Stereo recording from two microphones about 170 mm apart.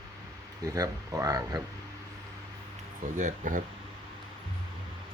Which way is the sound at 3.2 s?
50° right (ahead or behind).